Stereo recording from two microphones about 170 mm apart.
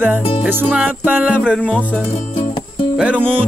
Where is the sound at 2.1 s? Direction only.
30° left (ahead or behind).